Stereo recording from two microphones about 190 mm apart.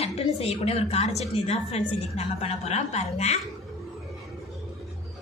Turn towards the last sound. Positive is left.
turn(degrees=35)  # may be behind; listen again after turning